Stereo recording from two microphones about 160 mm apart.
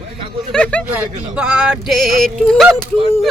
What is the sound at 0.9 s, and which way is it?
Speech, 10° right (ahead or behind).